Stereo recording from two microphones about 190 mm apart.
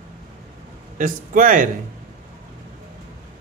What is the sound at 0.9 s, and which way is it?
Speech, 45° right (ahead or behind).